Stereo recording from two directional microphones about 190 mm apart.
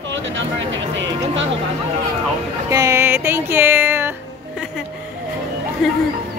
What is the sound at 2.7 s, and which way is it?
Music, 15° right (ahead or behind).